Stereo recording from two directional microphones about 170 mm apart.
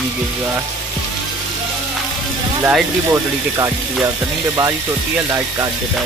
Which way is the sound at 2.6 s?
15° right (ahead or behind).